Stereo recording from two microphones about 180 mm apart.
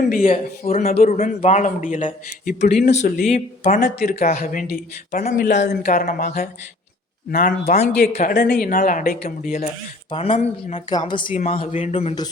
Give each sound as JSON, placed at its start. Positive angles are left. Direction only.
{"t": 0.3, "sound": "speech", "side_deg": 35}
{"t": 3.8, "sound": "speech", "side_deg": 65}
{"t": 8.4, "sound": "speech", "side_deg": 65}
{"t": 10.1, "sound": "speech", "side_deg": 30}
{"t": 10.8, "sound": "a woman's voice", "side_deg": 25}
{"t": 11.3, "sound": "speech", "side_deg": 40}